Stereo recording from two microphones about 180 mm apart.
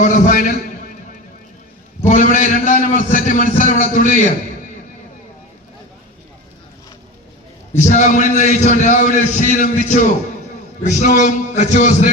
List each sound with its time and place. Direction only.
0.0 s a man's voice: 45° left (ahead or behind)
2.0 s a man's voice: 45° left (ahead or behind)
7.8 s a man's voice: 40° left (ahead or behind)